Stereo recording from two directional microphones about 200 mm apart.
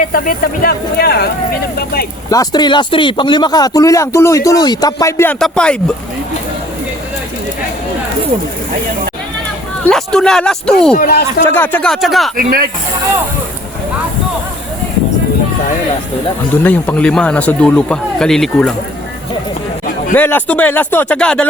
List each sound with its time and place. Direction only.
0.0 s speech: 45° left (ahead or behind)
2.3 s speech: 20° left (ahead or behind)
9.8 s speech: 5° left (ahead or behind)
10.9 s speech: 50° left (ahead or behind)
11.5 s speech: 10° left (ahead or behind)
12.4 s speech: 50° right (ahead or behind)
16.6 s speech: 10° left (ahead or behind)
20.1 s speech: 10° left (ahead or behind)